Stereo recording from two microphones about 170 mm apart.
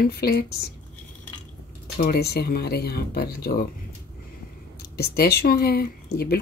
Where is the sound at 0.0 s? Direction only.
65° left (ahead or behind).